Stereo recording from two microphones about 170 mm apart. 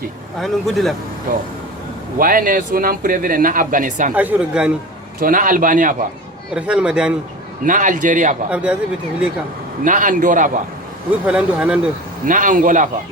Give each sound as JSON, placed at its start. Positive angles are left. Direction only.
{"t": 0.3, "sound": "speech", "side_deg": 0}
{"t": 2.1, "sound": "speech", "side_deg": -55}
{"t": 4.1, "sound": "speech", "side_deg": -10}
{"t": 5.2, "sound": "speech", "side_deg": -50}
{"t": 6.5, "sound": "speech", "side_deg": -5}
{"t": 7.6, "sound": "speech", "side_deg": -50}
{"t": 8.4, "sound": "speech", "side_deg": -5}
{"t": 9.8, "sound": "speech", "side_deg": -50}
{"t": 11.1, "sound": "speech", "side_deg": -5}
{"t": 12.2, "sound": "speech", "side_deg": -50}